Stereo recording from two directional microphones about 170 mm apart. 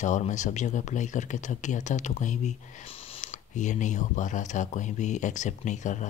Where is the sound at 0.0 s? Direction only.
45° left (ahead or behind).